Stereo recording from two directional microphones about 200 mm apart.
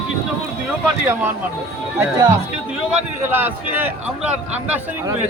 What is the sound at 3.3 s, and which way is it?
A man's voice, 10° right (ahead or behind).